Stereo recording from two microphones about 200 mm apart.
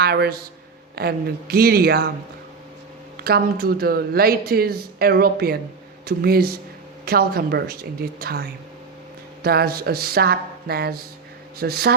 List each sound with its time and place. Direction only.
0.0 s a man's voice: 55° right (ahead or behind)
3.2 s speech: 50° right (ahead or behind)